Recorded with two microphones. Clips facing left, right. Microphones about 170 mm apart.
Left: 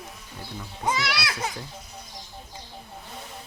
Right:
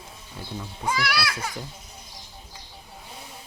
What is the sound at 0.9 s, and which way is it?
Speech, 20° left (ahead or behind).